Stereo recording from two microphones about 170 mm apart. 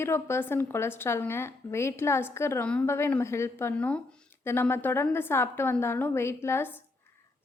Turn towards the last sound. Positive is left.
turn(degrees=10)  # may be behind; listen again after turning